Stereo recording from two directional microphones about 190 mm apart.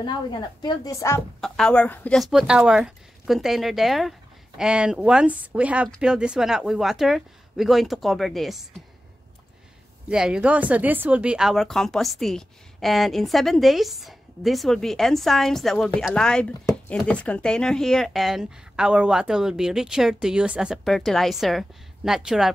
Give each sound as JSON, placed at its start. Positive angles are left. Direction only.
{"t": 0.0, "sound": "speech", "side_deg": 25}
{"t": 1.4, "sound": "speech", "side_deg": 5}
{"t": 10.0, "sound": "speech", "side_deg": -5}